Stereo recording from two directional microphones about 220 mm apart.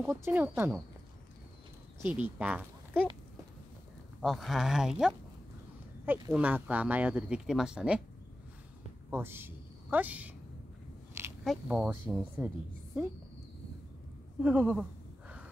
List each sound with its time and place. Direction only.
0.0 s speech: 10° right (ahead or behind)
2.0 s speech: 10° right (ahead or behind)
4.2 s speech: centre (ahead or behind)
6.0 s speech: 15° right (ahead or behind)
9.1 s a woman's voice: 10° right (ahead or behind)
11.4 s speech: 5° right (ahead or behind)
14.4 s a sound: 5° right (ahead or behind)